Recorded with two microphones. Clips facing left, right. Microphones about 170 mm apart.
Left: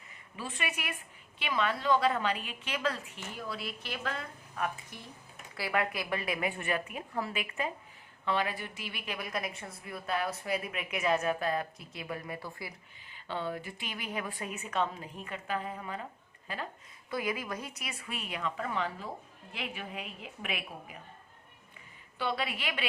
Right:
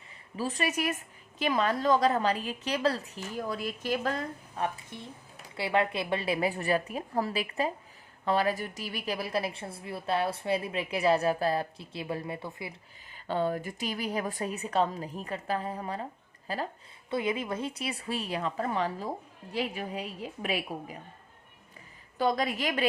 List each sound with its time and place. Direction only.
0.3 s a woman's voice: 40° right (ahead or behind); by 12.7 s 20° right (ahead or behind)
13.1 s a woman's voice: 40° right (ahead or behind)
17.1 s a woman's voice: 25° right (ahead or behind)
22.2 s a woman's voice: 40° right (ahead or behind)